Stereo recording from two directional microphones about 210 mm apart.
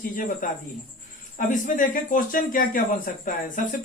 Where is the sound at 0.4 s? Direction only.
40° left (ahead or behind).